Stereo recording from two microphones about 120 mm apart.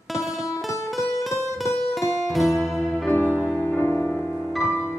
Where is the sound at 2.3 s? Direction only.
Centre (ahead or behind).